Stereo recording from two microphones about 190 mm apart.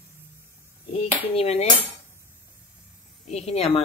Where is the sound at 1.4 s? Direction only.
35° left (ahead or behind).